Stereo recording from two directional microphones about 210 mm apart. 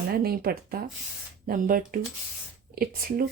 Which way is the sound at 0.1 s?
45° right (ahead or behind).